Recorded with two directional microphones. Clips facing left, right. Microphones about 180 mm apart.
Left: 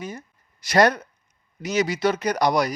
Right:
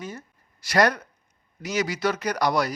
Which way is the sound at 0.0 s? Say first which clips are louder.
Left 2 dB; 15° left (ahead or behind).